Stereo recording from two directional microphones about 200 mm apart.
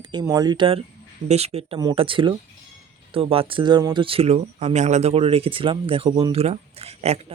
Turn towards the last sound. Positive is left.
turn(degrees=-30)  # may be behind; listen again after turning